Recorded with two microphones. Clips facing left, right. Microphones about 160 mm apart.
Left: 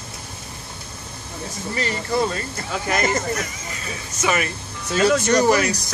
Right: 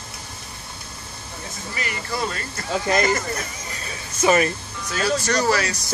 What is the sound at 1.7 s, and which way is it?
Speech, 30° left (ahead or behind).